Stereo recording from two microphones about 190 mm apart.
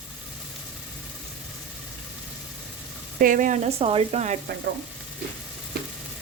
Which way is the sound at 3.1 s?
45° right (ahead or behind).